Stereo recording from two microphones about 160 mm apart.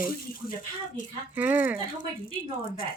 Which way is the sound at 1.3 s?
10° right (ahead or behind).